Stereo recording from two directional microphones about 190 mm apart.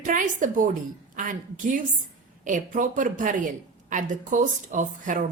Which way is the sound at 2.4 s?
45° right (ahead or behind).